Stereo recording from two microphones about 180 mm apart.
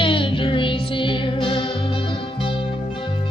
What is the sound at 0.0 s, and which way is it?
Music, 30° left (ahead or behind).